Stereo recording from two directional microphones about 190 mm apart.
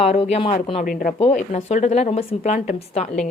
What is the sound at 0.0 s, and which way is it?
A woman's voice, 35° left (ahead or behind).